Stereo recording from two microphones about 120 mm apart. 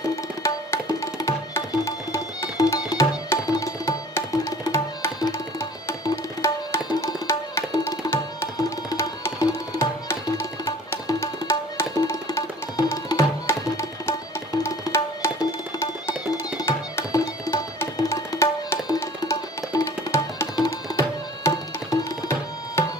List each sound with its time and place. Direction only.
0.1 s tabla: 25° left (ahead or behind)
16.3 s music: 25° left (ahead or behind)
21.5 s tabla: 25° left (ahead or behind)